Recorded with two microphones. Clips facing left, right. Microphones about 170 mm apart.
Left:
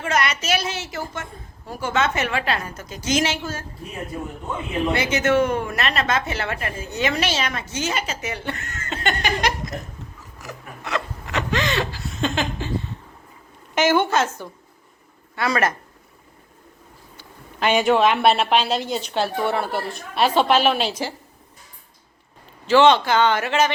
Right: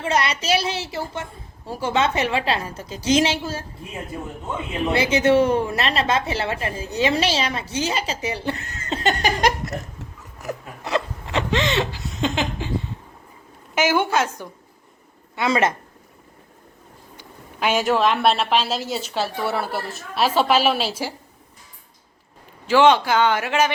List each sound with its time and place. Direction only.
0.0 s a woman's voice: 30° right (ahead or behind)
4.9 s a woman's voice: 30° right (ahead or behind)
10.8 s hiccup: 30° right (ahead or behind)
13.7 s speech: 10° right (ahead or behind)
15.4 s speech: 20° right (ahead or behind)
17.2 s speech: 5° right (ahead or behind)
22.6 s speech: 10° right (ahead or behind)